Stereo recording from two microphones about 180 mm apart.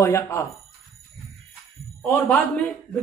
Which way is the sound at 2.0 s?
10° left (ahead or behind).